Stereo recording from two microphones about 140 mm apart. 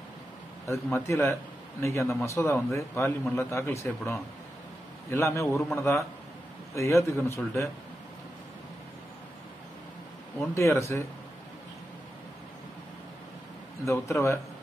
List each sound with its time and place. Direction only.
0.9 s a man's voice: 20° left (ahead or behind)
10.5 s a man's voice: 20° left (ahead or behind)
13.8 s a man's voice: 20° left (ahead or behind)